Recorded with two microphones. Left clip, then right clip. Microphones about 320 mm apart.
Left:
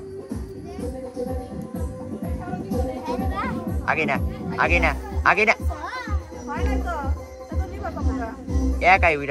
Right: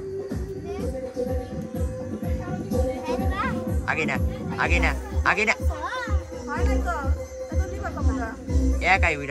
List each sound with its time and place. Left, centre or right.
3.1 s children playing: centre
3.8 s speech: centre
6.5 s music: centre
8.8 s speech: centre